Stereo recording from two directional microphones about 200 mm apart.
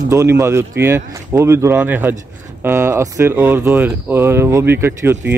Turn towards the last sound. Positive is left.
turn(degrees=-10)  # may be behind; listen again after turning